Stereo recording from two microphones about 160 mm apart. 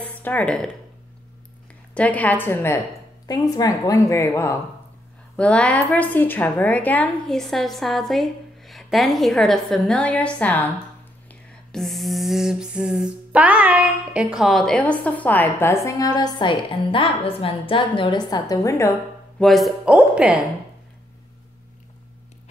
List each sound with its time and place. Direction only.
0.0 s speech: 10° left (ahead or behind)
2.0 s a sound: 10° left (ahead or behind)
3.3 s a woman's voice: 25° left (ahead or behind)
5.3 s a woman's voice: 5° left (ahead or behind)
11.2 s a sound: centre (ahead or behind); by 18.9 s 20° left (ahead or behind)
19.4 s a woman's voice: centre (ahead or behind)